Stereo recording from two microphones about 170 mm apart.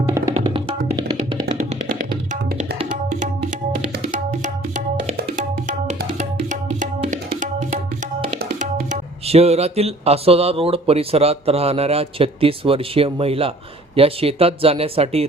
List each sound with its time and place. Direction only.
0.4 s music: 25° right (ahead or behind)
1.5 s music: 50° right (ahead or behind)
4.1 s music: 50° right (ahead or behind)
8.5 s speech: 40° right (ahead or behind)